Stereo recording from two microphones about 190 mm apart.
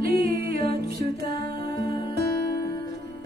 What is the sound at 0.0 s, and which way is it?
Music, 55° right (ahead or behind).